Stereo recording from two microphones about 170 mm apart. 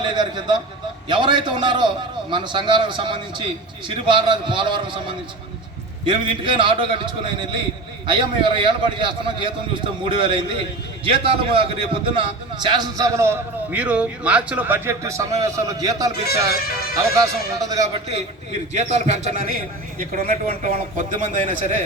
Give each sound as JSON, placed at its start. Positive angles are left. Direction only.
{"t": 0.0, "sound": "a man's voice", "side_deg": -25}
{"t": 16.5, "sound": "speech", "side_deg": 65}
{"t": 17.6, "sound": "a man's voice", "side_deg": -20}
{"t": 18.7, "sound": "a man's voice", "side_deg": -45}